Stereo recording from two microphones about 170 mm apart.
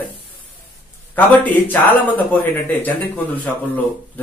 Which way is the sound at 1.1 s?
10° left (ahead or behind).